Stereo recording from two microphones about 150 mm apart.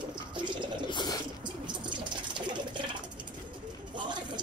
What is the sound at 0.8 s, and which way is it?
Drip, 30° left (ahead or behind).